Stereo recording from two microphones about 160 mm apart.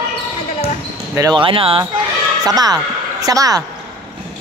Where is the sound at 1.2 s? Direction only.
25° right (ahead or behind).